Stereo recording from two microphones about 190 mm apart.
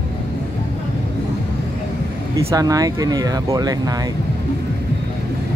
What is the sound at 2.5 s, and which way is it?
Speech, 20° right (ahead or behind).